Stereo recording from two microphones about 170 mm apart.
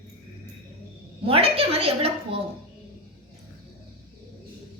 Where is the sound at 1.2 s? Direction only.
35° right (ahead or behind).